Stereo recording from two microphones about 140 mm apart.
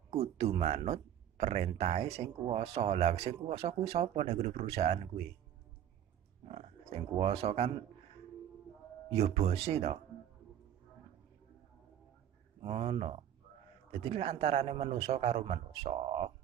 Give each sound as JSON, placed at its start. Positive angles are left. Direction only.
{"t": 0.1, "sound": "speech", "side_deg": -50}
{"t": 6.4, "sound": "speech", "side_deg": -45}
{"t": 9.1, "sound": "speech", "side_deg": -50}
{"t": 12.6, "sound": "speech", "side_deg": -40}